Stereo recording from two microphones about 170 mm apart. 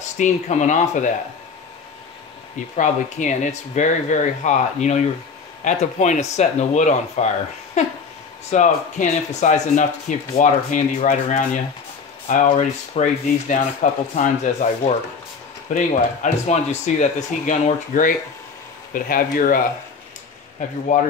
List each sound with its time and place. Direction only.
0.2 s speech: 45° left (ahead or behind)
2.7 s speech: 45° left (ahead or behind)
8.5 s speech: 45° left (ahead or behind)
20.9 s speech: 45° left (ahead or behind)